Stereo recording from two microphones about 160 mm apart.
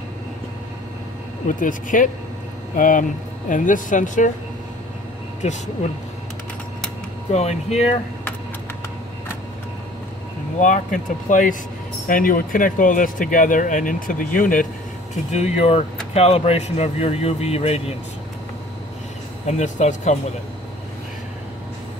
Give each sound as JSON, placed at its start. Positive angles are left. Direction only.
{"t": 1.5, "sound": "speech", "side_deg": 55}
{"t": 5.4, "sound": "speech", "side_deg": 45}
{"t": 7.2, "sound": "speech", "side_deg": 45}
{"t": 10.6, "sound": "speech", "side_deg": 55}
{"t": 15.3, "sound": "speech", "side_deg": 40}
{"t": 19.4, "sound": "speech", "side_deg": 50}